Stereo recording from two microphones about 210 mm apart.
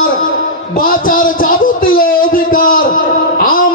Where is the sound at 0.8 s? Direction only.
40° left (ahead or behind).